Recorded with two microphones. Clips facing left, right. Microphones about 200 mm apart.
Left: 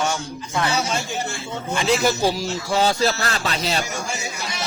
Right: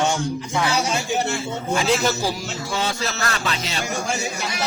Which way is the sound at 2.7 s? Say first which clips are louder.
Left 7 dB; 35° left (ahead or behind).